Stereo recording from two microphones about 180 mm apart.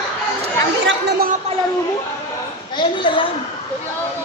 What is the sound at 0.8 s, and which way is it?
Chatter, 90° right.